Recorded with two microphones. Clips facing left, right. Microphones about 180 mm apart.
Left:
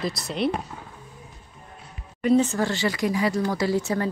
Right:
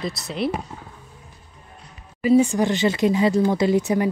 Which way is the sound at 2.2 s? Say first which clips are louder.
Right 3 dB; 5° right (ahead or behind).